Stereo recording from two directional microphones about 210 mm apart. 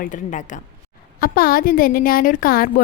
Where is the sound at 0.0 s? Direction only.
35° left (ahead or behind).